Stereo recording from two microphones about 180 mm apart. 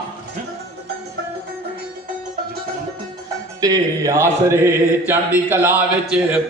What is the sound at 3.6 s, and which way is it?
Mantra, 20° right (ahead or behind).